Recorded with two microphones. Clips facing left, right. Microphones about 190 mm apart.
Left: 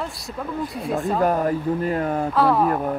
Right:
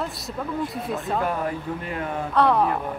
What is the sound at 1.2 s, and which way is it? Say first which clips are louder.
Speech: left 6 dB; 40° left (ahead or behind).